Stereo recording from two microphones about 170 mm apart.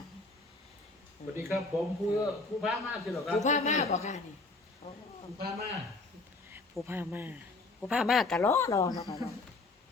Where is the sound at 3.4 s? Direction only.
40° left (ahead or behind).